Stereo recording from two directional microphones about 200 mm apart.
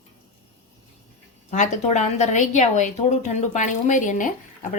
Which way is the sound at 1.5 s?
35° left (ahead or behind).